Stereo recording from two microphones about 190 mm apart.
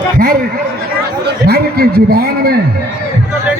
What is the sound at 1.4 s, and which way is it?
A man's voice, 55° right (ahead or behind).